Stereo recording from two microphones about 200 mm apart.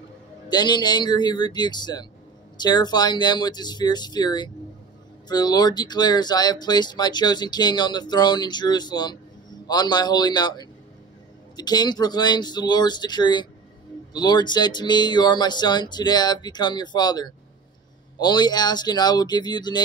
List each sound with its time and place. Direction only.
0.5 s speech: 20° left (ahead or behind)